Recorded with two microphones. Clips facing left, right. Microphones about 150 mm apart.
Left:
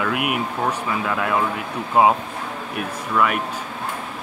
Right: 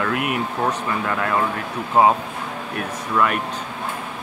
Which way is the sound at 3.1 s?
5° left (ahead or behind).